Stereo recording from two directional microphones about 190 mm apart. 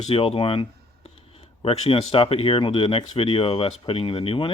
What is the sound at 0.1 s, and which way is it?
Speech, 30° left (ahead or behind).